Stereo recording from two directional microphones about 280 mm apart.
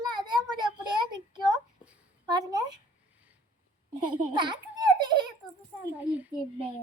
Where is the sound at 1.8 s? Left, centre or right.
Centre.